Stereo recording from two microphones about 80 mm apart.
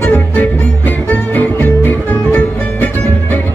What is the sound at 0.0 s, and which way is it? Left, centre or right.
Music, left.